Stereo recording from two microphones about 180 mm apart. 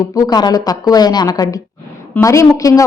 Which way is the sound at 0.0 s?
20° left (ahead or behind).